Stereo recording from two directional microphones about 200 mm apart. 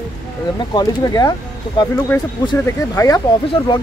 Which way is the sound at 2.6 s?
15° left (ahead or behind).